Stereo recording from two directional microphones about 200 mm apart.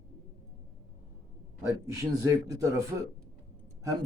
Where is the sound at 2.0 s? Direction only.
15° right (ahead or behind).